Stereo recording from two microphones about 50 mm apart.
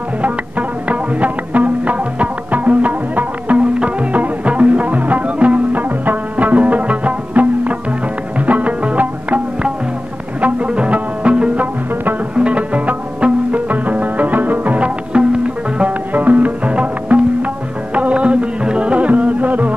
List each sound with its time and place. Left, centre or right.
0.2 s music: right
10.4 s music: right
16.1 s music: right